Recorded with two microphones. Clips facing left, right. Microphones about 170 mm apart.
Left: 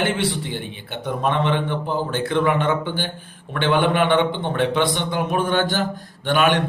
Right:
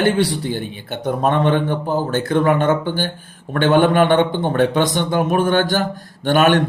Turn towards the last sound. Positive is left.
turn(degrees=-45)  # may be behind; listen again after turning